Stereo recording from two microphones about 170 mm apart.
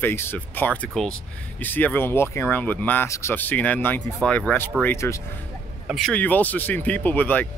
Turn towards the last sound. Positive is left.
turn(degrees=10)  # may be behind; listen again after turning